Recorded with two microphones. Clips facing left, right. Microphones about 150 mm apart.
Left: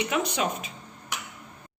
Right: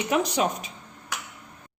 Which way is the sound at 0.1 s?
40° right (ahead or behind).